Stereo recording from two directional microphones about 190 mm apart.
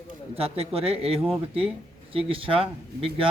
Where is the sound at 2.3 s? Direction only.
30° right (ahead or behind).